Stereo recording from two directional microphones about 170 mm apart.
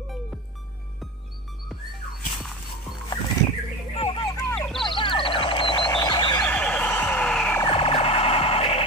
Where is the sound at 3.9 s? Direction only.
35° left (ahead or behind).